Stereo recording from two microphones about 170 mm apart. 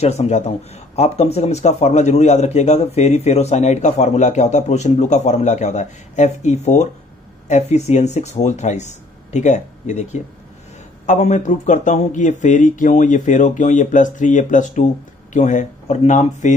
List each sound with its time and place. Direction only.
0.0 s a man's voice: 40° left (ahead or behind)
11.1 s a man's voice: 45° left (ahead or behind)